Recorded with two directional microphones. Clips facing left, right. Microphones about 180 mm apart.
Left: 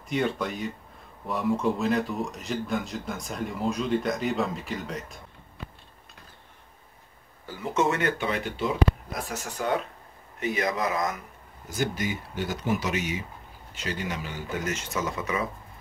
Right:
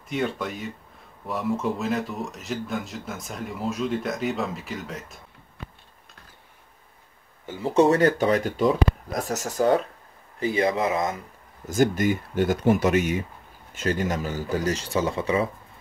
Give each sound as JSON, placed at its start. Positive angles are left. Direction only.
{"t": 0.1, "sound": "speech", "side_deg": 0}
{"t": 7.4, "sound": "speech", "side_deg": -25}
{"t": 11.6, "sound": "speech", "side_deg": -50}